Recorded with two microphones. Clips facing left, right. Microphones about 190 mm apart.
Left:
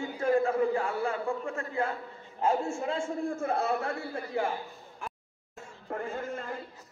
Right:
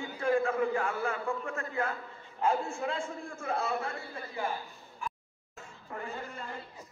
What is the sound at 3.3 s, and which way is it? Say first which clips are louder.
Speech: left 1 dB; 55° left (ahead or behind).